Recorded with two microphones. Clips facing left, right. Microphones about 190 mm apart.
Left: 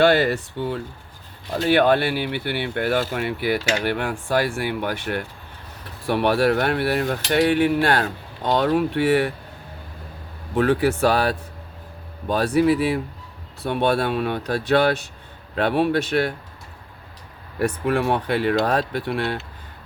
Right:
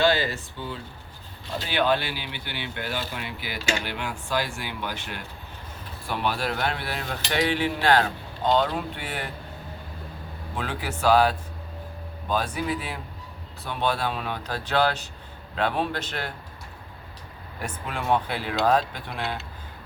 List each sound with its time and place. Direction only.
0.0 s speech: 60° left (ahead or behind)
6.1 s speech: 70° left (ahead or behind)
8.5 s speech: 70° left (ahead or behind)
10.5 s speech: 65° left (ahead or behind)
12.5 s speech: 70° left (ahead or behind)
17.8 s speech: 65° left (ahead or behind)